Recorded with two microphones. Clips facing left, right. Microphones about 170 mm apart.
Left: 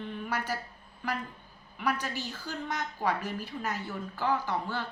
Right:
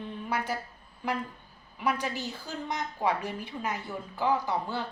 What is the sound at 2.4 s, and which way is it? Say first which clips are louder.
A woman's voice: left 1 dB; 25° right (ahead or behind).